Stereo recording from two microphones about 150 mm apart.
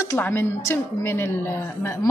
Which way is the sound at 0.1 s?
15° left (ahead or behind).